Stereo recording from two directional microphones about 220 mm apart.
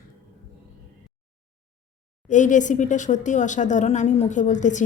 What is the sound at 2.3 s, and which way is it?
Speech, 35° left (ahead or behind).